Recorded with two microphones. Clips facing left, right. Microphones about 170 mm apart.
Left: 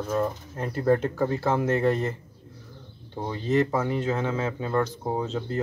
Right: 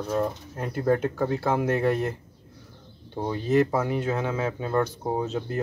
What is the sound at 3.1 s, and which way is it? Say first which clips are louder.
Speech: right 2 dB; 10° right (ahead or behind).